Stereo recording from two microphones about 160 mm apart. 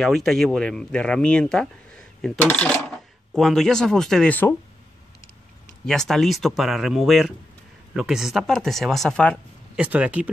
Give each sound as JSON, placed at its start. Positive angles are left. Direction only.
{"t": 0.0, "sound": "speech", "side_deg": 5}
{"t": 5.9, "sound": "speech", "side_deg": 5}
{"t": 9.8, "sound": "speech", "side_deg": -10}